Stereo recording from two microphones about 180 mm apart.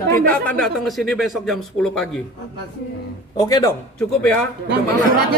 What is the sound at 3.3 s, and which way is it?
Speech, 20° left (ahead or behind).